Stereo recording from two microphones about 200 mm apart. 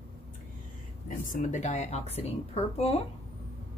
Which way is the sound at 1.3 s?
35° left (ahead or behind).